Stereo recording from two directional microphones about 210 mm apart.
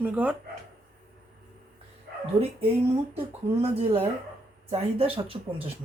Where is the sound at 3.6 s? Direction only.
30° right (ahead or behind).